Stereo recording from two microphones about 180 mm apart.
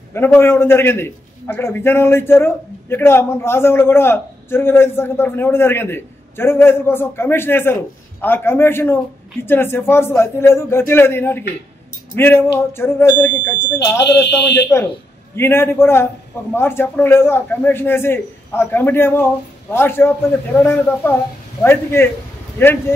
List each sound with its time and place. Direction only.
0.1 s a man's voice: 10° left (ahead or behind)
14.0 s speech: 70° left (ahead or behind)
15.3 s a man's voice: 15° left (ahead or behind)